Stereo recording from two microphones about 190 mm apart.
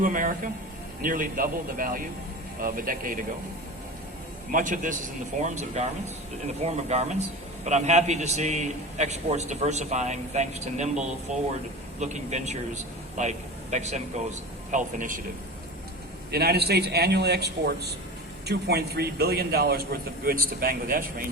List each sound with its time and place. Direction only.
0.0 s a man's voice: 45° right (ahead or behind)
4.5 s a man's voice: 45° right (ahead or behind)
16.3 s a man's voice: 55° right (ahead or behind)